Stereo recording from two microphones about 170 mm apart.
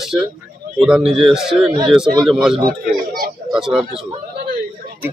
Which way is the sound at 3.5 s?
5° right (ahead or behind).